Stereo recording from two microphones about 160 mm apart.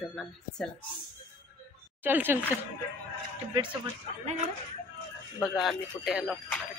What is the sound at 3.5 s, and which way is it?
Speech, 30° right (ahead or behind).